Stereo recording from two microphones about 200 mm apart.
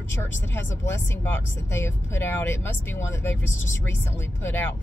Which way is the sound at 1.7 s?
10° left (ahead or behind).